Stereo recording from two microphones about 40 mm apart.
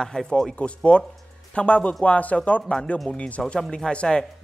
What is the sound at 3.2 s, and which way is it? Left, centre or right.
A man's voice, left.